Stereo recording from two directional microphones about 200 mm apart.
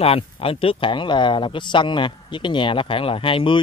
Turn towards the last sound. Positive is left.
turn(degrees=25)  # may be behind; listen again after turning